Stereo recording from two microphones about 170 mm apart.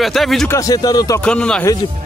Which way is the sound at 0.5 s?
20° left (ahead or behind).